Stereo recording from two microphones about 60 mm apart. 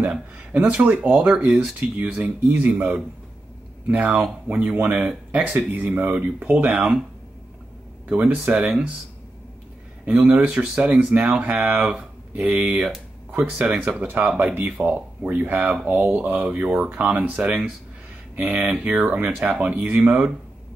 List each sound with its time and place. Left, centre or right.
0.0 s speech: right
4.9 s speech: centre
5.7 s speech: right
8.1 s speech: centre
10.0 s speech: right